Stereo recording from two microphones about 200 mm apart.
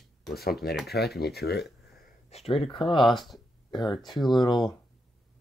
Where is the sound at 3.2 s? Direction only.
Centre (ahead or behind).